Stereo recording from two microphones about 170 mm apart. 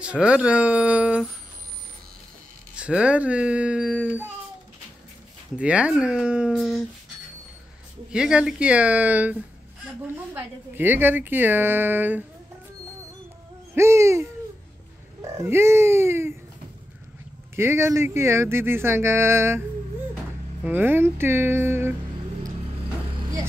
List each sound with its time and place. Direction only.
0.0 s speech: 5° right (ahead or behind)
2.7 s speech: 5° right (ahead or behind)
5.6 s speech: 5° right (ahead or behind)
8.1 s speech: 5° right (ahead or behind)
13.7 s speech: 15° right (ahead or behind)
15.3 s speech: 15° right (ahead or behind)
17.6 s speech: 15° right (ahead or behind)
20.6 s speech: 10° right (ahead or behind)